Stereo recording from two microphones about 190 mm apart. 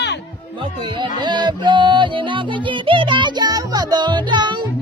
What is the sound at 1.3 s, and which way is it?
Music, 25° right (ahead or behind).